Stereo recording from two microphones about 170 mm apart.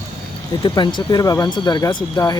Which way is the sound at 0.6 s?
25° left (ahead or behind).